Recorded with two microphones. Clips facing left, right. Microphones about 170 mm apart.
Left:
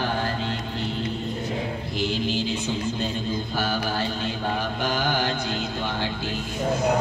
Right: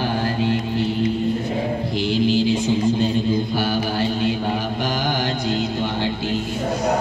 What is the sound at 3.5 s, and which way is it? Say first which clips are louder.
Mantra: right 5 dB; 15° right (ahead or behind).